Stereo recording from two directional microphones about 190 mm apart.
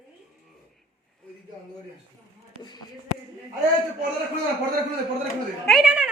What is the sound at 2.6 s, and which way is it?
Speech, 25° left (ahead or behind).